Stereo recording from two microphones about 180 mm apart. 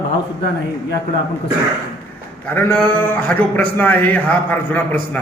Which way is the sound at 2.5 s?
10° left (ahead or behind).